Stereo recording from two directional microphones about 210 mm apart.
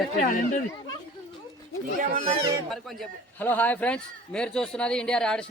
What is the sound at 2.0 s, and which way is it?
Speech, 35° right (ahead or behind).